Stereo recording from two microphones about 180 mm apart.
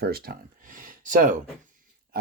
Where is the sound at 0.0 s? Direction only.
60° right (ahead or behind).